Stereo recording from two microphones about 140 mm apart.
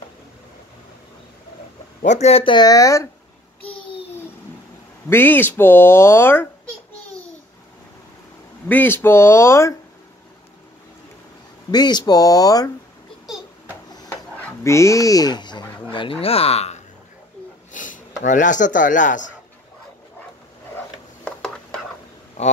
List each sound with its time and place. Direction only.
2.0 s speech: 55° left (ahead or behind); by 3.1 s 25° left (ahead or behind)
5.1 s speech: 15° left (ahead or behind)
8.6 s speech: 15° left (ahead or behind)
11.7 s speech: 30° left (ahead or behind)
13.7 s a sound: 20° left (ahead or behind); by 16.8 s 50° left (ahead or behind)
17.7 s speech: 65° left (ahead or behind)
20.7 s a sound: 5° left (ahead or behind)
22.4 s speech: 55° left (ahead or behind)